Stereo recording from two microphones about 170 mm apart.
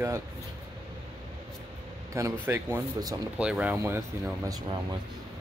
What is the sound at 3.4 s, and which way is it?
Speech, 5° right (ahead or behind).